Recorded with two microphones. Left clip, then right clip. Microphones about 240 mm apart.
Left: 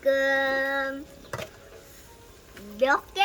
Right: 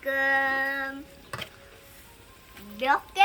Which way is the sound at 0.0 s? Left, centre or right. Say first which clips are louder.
Left 2 dB; left.